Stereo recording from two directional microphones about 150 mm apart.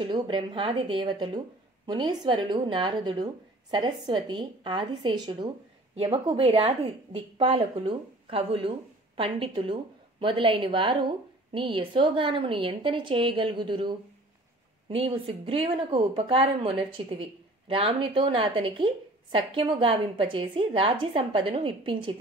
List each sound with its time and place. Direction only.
0.0 s speech: 35° right (ahead or behind)
6.1 s speech: 40° right (ahead or behind)